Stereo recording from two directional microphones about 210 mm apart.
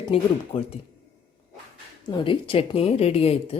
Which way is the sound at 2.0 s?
25° left (ahead or behind).